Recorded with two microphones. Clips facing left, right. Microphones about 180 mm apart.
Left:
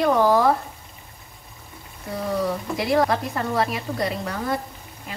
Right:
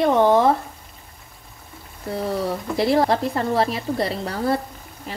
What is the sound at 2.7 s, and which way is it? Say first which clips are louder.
A woman's voice: right 3 dB; 30° right (ahead or behind).